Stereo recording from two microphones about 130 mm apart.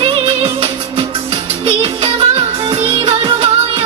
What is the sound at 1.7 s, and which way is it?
Music, 45° right (ahead or behind).